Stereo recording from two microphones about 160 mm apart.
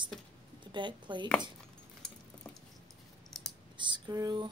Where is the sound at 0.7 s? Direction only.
30° right (ahead or behind).